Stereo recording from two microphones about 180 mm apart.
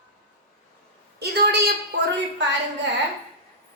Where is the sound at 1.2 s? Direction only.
60° right (ahead or behind).